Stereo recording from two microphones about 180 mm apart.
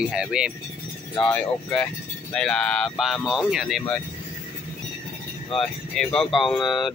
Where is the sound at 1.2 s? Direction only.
5° left (ahead or behind).